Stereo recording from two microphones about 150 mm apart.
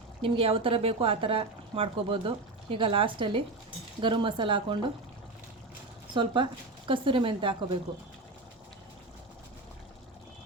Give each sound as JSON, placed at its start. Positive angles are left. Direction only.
{"t": 0.2, "sound": "speech", "side_deg": -35}
{"t": 6.1, "sound": "speech", "side_deg": -30}